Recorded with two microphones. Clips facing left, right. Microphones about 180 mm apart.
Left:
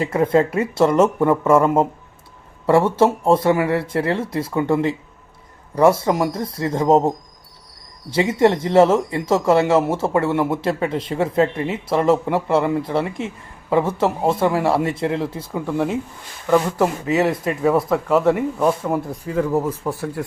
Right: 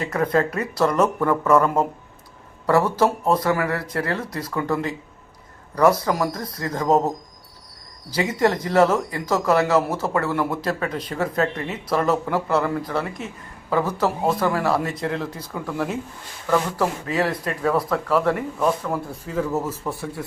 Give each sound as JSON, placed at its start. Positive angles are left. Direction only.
{"t": 0.0, "sound": "speech", "side_deg": 25}
{"t": 8.1, "sound": "speech", "side_deg": 25}
{"t": 19.2, "sound": "speech", "side_deg": 10}